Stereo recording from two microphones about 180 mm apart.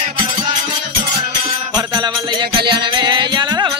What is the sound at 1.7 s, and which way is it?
Music, 25° right (ahead or behind).